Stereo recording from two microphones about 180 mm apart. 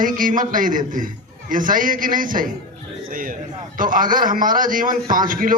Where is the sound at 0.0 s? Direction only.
45° right (ahead or behind).